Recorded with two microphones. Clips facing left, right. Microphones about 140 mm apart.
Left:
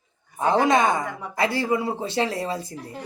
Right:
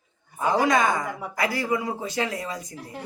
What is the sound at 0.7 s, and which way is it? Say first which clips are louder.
Speech: left 2 dB; 25° left (ahead or behind).